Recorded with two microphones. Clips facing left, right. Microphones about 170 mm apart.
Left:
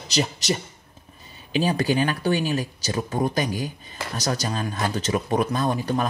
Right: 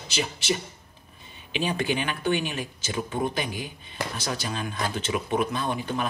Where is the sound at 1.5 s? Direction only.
40° left (ahead or behind).